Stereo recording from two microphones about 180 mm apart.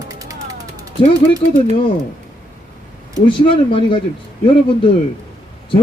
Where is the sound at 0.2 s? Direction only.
20° right (ahead or behind).